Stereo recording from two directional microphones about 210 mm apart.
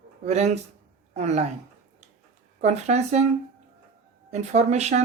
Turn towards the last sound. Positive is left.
turn(degrees=-35)  # may be behind; listen again after turning